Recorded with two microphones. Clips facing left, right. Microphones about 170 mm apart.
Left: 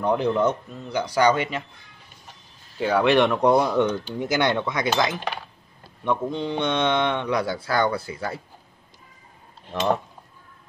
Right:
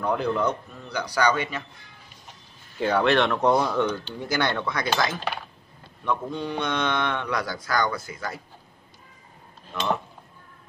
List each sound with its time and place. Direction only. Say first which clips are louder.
0.0 s speech: left 3 dB; 20° left (ahead or behind)
2.8 s speech: left 2 dB; 5° left (ahead or behind); by 8.4 s 30° left (ahead or behind)